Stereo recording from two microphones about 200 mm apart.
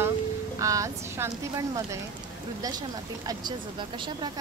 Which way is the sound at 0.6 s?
15° right (ahead or behind).